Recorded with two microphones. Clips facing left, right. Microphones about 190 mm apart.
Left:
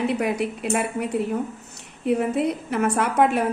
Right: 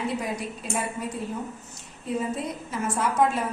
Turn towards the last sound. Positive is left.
turn(degrees=65)  # may be behind; listen again after turning